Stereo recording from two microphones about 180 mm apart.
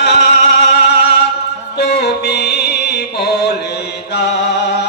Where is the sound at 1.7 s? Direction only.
65° left (ahead or behind).